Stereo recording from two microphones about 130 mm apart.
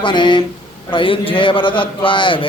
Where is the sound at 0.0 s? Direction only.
40° left (ahead or behind).